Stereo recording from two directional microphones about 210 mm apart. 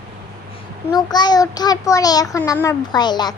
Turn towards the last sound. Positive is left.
turn(degrees=20)  # may be behind; listen again after turning